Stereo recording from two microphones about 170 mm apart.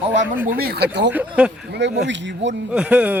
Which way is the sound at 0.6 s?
65° right (ahead or behind).